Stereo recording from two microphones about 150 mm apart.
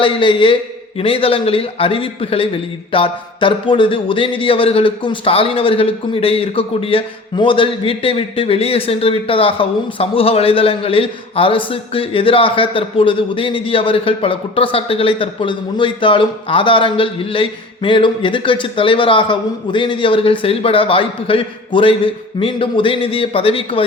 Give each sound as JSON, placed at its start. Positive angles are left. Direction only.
{"t": 0.0, "sound": "speech", "side_deg": 35}